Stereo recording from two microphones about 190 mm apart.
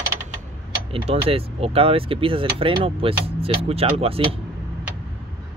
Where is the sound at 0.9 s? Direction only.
30° right (ahead or behind).